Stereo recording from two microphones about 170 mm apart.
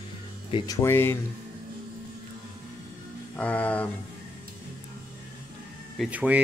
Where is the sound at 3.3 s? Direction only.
10° left (ahead or behind).